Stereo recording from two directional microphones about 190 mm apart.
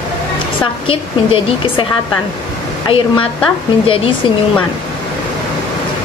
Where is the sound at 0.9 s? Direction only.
30° left (ahead or behind).